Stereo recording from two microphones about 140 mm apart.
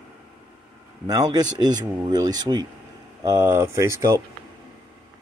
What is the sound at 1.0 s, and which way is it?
Speech, 25° right (ahead or behind).